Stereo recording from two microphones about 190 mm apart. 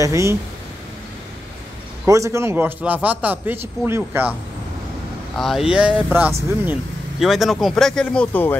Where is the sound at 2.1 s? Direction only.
15° right (ahead or behind).